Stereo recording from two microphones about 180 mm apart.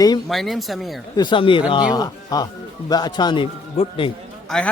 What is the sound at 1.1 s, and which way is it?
A man's voice, 25° left (ahead or behind).